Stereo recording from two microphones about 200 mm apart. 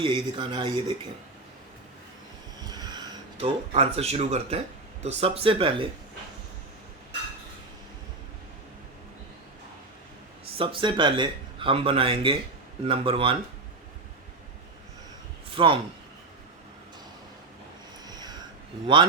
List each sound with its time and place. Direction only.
0.0 s speech: 25° right (ahead or behind)
2.6 s a sound: 20° right (ahead or behind)
3.3 s speech: 30° right (ahead or behind)
10.6 s speech: 25° right (ahead or behind)
15.4 s speech: 25° right (ahead or behind)
18.0 s a sound: 20° right (ahead or behind)